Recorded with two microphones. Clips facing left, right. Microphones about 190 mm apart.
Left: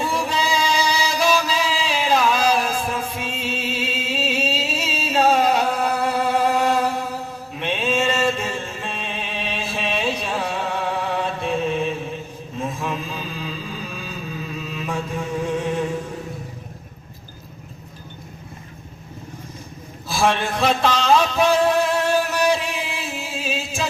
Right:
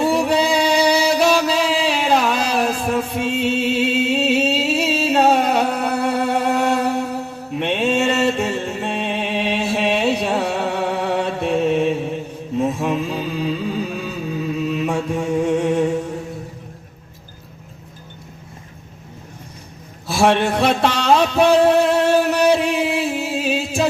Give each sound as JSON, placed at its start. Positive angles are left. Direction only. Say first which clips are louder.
{"t": 0.0, "sound": "music", "louder": "right 7 dB", "side_deg": -65}
{"t": 14.6, "sound": "mantra", "louder": "right 7 dB", "side_deg": -60}
{"t": 15.4, "sound": "music", "louder": "right 5 dB", "side_deg": -65}
{"t": 20.2, "sound": "music", "louder": "right 4 dB", "side_deg": -65}